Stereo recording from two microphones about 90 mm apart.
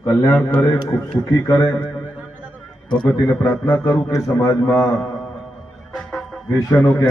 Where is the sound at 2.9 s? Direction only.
65° left (ahead or behind).